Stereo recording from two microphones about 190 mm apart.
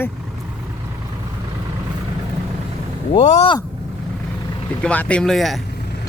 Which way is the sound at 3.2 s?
40° left (ahead or behind).